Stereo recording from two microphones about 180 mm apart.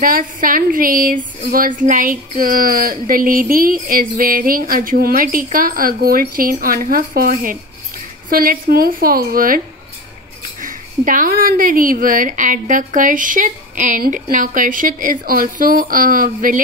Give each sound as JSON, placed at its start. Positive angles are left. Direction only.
{"t": 0.0, "sound": "speech", "side_deg": -50}
{"t": 10.6, "sound": "speech", "side_deg": -50}